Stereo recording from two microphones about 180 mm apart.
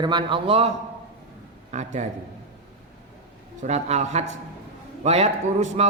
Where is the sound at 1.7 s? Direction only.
40° right (ahead or behind).